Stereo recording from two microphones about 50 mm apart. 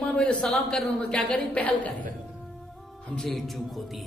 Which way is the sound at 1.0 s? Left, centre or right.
Left.